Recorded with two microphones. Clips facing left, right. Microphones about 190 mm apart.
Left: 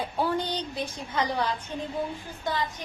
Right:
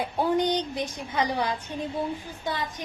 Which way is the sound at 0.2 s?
20° right (ahead or behind).